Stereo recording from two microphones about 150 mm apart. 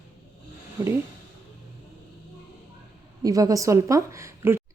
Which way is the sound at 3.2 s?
25° right (ahead or behind).